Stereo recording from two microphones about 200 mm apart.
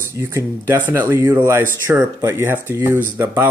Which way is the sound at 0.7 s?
10° right (ahead or behind).